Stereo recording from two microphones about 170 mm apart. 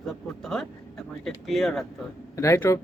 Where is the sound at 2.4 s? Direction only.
15° left (ahead or behind).